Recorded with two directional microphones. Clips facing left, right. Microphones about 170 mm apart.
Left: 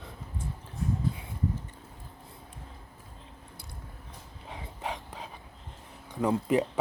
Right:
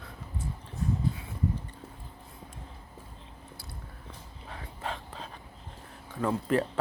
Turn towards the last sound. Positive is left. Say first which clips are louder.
# left 2 dB
turn(degrees=15)  # may be behind; listen again after turning